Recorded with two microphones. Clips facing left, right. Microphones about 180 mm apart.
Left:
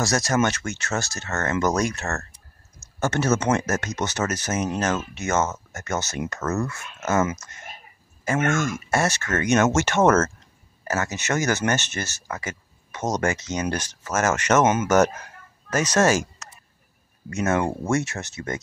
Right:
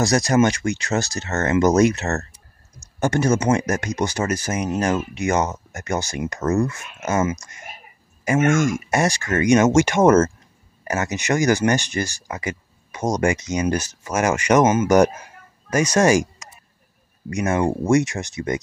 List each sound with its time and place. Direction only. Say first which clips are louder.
0.0 s speech: right 5 dB; 15° right (ahead or behind)